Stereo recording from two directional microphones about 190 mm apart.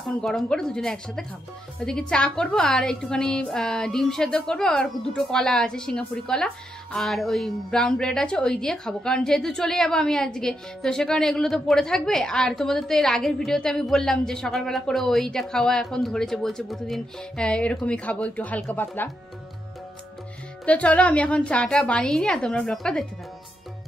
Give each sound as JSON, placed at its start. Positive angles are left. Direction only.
{"t": 0.2, "sound": "a woman's voice", "side_deg": 5}
{"t": 20.6, "sound": "a woman's voice", "side_deg": 5}